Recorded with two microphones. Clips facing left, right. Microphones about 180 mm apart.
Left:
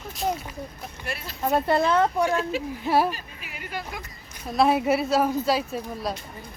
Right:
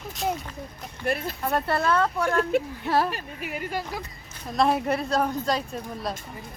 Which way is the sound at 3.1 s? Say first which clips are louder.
Right 2 dB; 65° right (ahead or behind).